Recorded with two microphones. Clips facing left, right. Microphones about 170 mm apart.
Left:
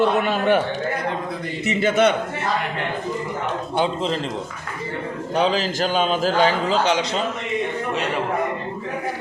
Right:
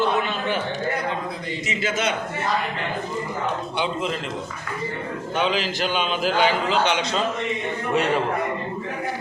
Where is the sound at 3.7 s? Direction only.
35° left (ahead or behind).